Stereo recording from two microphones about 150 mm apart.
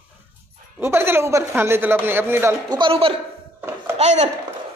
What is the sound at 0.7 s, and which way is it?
Speech, 15° right (ahead or behind).